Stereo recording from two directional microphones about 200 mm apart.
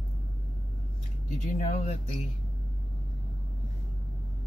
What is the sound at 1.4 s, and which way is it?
Speech, 40° left (ahead or behind).